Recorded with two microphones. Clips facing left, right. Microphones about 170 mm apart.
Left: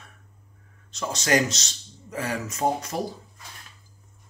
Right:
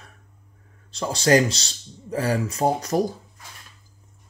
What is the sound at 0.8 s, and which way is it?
Speech, 30° right (ahead or behind).